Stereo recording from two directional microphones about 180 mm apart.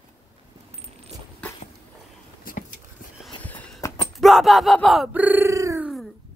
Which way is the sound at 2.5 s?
50° left (ahead or behind).